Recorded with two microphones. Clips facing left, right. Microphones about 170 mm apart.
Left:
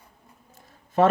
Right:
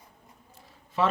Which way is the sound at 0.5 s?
45° left (ahead or behind).